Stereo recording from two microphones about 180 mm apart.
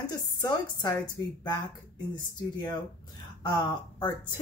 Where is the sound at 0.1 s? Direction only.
20° left (ahead or behind).